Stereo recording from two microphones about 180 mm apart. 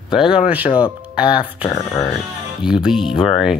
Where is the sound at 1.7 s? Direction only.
15° left (ahead or behind).